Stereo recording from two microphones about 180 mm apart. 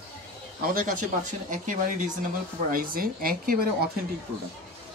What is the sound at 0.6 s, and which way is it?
A man's voice, 50° right (ahead or behind).